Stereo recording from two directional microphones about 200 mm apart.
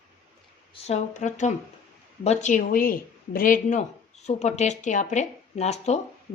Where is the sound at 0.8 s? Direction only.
35° left (ahead or behind).